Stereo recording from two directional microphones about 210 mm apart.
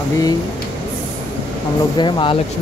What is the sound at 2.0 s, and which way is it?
Speech, 25° left (ahead or behind).